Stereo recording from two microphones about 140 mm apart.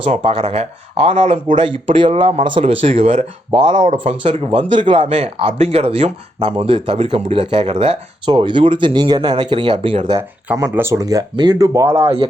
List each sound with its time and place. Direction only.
0.0 s speech: 50° right (ahead or behind)
10.2 s speech: 20° right (ahead or behind)
12.0 s speech: 40° right (ahead or behind)